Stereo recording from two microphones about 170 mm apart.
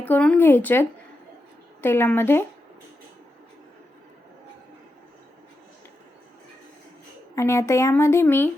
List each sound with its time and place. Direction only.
0.0 s speech: 10° left (ahead or behind)
7.3 s speech: 15° left (ahead or behind)